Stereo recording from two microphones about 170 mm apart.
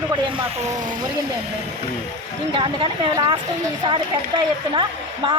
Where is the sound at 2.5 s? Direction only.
30° right (ahead or behind).